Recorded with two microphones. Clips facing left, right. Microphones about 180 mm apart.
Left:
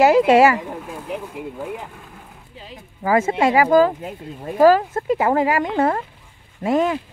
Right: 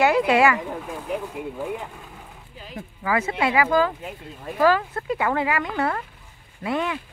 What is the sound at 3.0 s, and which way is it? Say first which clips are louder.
Speech: left 6 dB; 45° left (ahead or behind).